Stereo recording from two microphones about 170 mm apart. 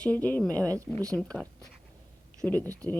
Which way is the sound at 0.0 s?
10° left (ahead or behind).